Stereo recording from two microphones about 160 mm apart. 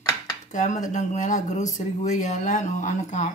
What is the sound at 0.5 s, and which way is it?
Speech, 50° left (ahead or behind).